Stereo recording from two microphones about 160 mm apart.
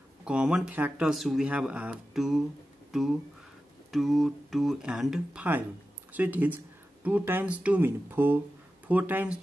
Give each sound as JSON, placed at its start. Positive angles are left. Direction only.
{"t": 0.2, "sound": "speech", "side_deg": -5}